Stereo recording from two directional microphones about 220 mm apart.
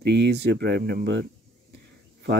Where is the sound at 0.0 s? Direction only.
50° right (ahead or behind).